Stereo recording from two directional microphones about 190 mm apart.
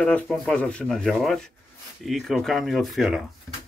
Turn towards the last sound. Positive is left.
turn(degrees=0)  # may be behind; listen again after turning